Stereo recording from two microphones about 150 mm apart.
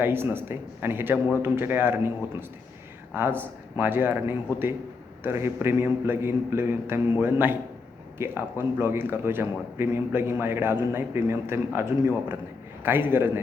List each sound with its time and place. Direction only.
0.0 s a man's voice: 15° right (ahead or behind)
3.2 s a man's voice: 15° right (ahead or behind)